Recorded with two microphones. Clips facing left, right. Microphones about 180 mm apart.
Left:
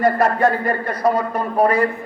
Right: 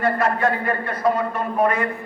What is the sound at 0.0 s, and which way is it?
A man's voice, 40° left (ahead or behind).